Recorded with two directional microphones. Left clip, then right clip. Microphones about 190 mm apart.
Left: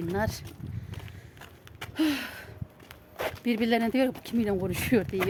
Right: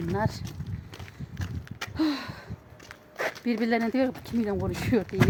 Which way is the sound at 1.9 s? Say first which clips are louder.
Left 1 dB; 5° left (ahead or behind).